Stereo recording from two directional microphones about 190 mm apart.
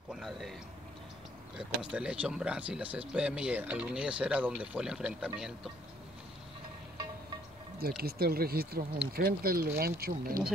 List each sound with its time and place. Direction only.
0.1 s a sound: centre (ahead or behind)
1.6 s speech: 5° right (ahead or behind)
8.0 s speech: 55° right (ahead or behind)